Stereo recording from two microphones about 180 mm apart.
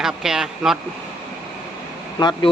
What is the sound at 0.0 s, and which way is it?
Speech, centre (ahead or behind).